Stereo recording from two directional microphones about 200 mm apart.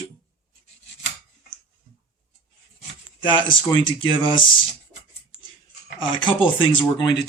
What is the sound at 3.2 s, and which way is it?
Speech, 25° left (ahead or behind).